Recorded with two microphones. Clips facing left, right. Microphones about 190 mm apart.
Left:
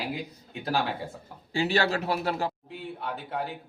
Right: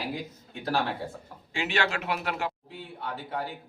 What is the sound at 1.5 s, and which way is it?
A man's voice, 35° left (ahead or behind).